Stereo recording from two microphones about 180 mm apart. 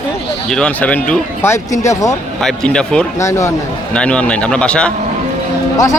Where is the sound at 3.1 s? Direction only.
15° left (ahead or behind).